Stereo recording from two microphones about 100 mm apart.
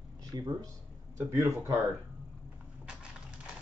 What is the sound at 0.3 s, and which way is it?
Speech, 40° right (ahead or behind).